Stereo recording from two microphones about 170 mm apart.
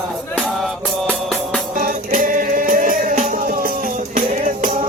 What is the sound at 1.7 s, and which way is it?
Music, 55° right (ahead or behind).